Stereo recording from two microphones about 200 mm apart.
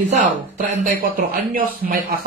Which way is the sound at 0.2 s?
40° right (ahead or behind).